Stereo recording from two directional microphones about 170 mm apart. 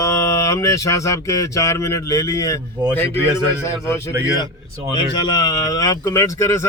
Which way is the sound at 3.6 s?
15° left (ahead or behind).